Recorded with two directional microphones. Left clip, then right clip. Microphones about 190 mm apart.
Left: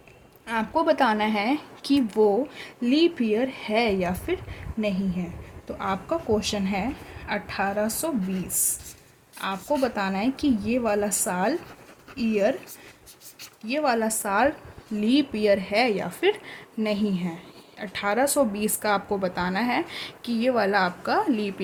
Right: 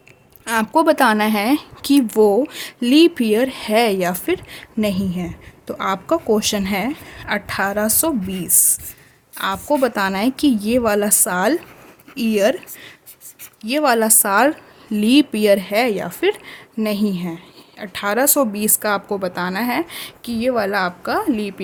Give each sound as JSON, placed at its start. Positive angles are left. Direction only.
{"t": 0.4, "sound": "a woman's voice", "side_deg": -45}
{"t": 13.6, "sound": "a woman's voice", "side_deg": -50}